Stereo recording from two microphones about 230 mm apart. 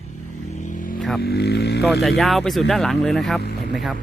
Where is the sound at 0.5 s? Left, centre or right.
Left.